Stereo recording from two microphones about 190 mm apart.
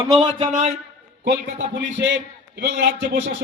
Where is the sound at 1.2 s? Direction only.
65° right (ahead or behind).